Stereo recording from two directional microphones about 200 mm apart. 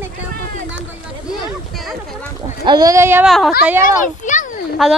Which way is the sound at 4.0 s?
40° left (ahead or behind).